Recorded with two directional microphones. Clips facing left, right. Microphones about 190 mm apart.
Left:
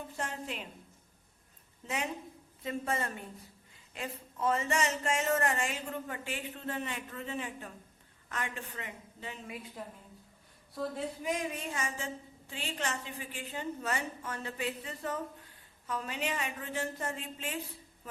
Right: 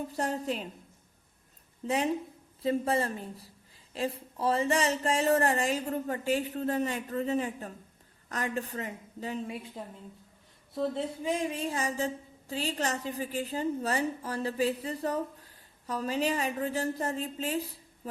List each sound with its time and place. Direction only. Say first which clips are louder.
0.1 s a woman's voice: right 7 dB; 35° right (ahead or behind)
2.6 s a woman's voice: right 7 dB; 35° right (ahead or behind)
10.8 s a woman's voice: right 5 dB; 25° right (ahead or behind)